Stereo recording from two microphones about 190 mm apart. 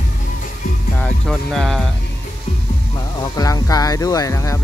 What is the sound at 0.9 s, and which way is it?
Music, 5° left (ahead or behind).